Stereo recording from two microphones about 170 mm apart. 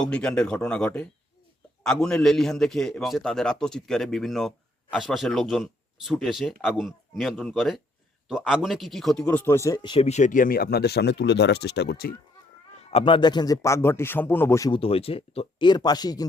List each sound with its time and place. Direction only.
0.0 s a man's voice: 5° left (ahead or behind); by 12.1 s 70° left (ahead or behind)
12.8 s a man's voice: 35° left (ahead or behind); by 14.7 s 15° left (ahead or behind)
14.7 s speech: 35° left (ahead or behind)